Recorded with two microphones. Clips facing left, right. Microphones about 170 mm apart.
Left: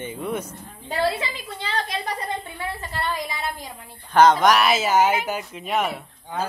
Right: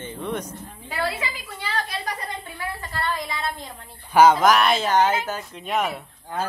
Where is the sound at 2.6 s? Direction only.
20° left (ahead or behind).